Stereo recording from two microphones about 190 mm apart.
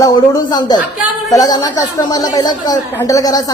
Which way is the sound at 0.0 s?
20° left (ahead or behind).